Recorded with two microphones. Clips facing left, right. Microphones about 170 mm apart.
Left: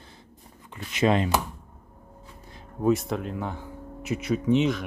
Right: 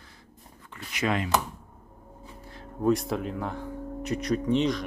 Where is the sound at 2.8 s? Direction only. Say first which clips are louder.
Left 1 dB; centre (ahead or behind).